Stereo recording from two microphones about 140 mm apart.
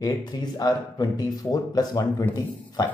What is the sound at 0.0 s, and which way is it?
Speech, 25° left (ahead or behind).